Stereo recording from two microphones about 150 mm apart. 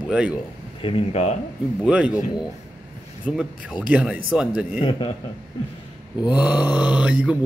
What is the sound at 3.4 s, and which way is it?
Mantra, 5° right (ahead or behind).